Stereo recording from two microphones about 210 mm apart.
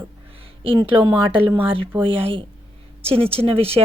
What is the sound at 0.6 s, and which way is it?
A woman's voice, 25° right (ahead or behind).